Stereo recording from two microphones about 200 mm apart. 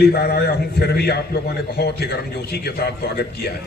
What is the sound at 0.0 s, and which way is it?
A man's voice, 55° left (ahead or behind).